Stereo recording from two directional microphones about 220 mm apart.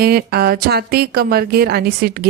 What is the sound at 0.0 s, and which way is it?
A woman's voice, 45° right (ahead or behind).